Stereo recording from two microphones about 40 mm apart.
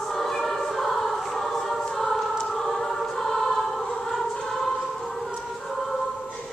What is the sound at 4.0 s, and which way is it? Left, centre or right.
Music, centre.